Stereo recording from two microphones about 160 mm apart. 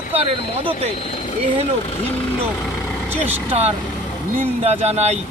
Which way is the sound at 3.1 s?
10° right (ahead or behind).